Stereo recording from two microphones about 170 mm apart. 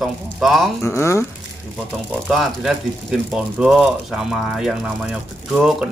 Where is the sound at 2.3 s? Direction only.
Centre (ahead or behind).